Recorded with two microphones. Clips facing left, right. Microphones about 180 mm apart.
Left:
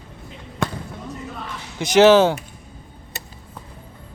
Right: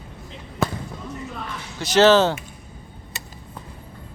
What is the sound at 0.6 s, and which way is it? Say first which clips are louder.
Basketball bounce: right 1 dB; centre (ahead or behind).